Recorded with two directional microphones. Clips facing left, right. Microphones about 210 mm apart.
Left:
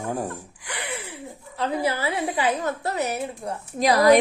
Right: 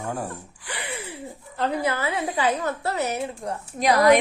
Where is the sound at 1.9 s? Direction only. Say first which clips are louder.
Left 1 dB; 30° left (ahead or behind).